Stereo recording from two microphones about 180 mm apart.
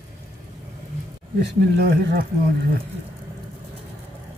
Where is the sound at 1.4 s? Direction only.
70° right (ahead or behind).